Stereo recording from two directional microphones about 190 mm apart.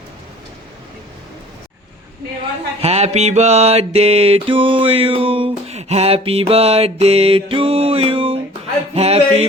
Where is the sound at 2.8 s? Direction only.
35° right (ahead or behind).